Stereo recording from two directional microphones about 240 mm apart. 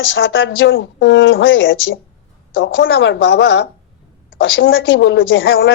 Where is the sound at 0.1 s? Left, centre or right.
Left.